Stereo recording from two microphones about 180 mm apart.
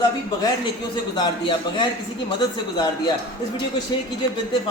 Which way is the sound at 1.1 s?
25° left (ahead or behind).